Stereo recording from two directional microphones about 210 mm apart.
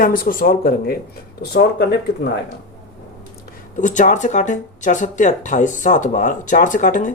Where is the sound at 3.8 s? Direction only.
35° left (ahead or behind).